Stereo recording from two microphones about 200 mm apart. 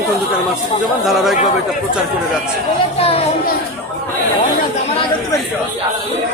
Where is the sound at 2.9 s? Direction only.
30° left (ahead or behind).